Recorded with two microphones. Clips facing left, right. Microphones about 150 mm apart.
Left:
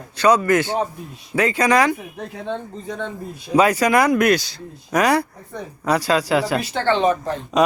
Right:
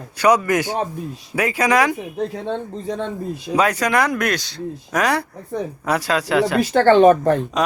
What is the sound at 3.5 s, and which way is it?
A man's voice, 5° left (ahead or behind).